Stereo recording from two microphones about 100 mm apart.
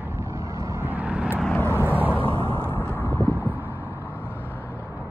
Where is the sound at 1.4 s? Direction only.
10° left (ahead or behind).